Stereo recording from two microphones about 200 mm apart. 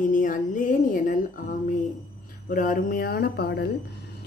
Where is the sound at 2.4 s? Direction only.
40° left (ahead or behind).